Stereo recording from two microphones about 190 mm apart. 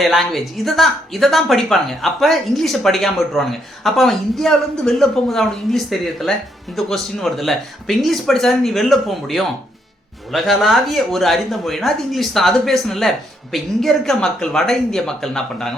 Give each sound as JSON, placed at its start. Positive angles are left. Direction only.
{"t": 0.0, "sound": "speech", "side_deg": 0}